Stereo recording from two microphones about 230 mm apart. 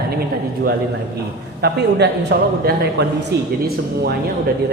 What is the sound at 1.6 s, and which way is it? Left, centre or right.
A man's voice, right.